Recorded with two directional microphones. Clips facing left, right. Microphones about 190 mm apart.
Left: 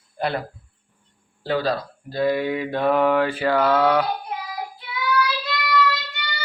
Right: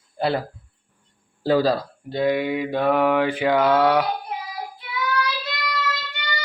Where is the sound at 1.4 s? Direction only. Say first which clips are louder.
Right 4 dB; 40° right (ahead or behind).